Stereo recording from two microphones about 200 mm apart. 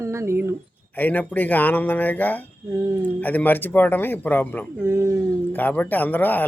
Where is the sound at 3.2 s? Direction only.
10° left (ahead or behind).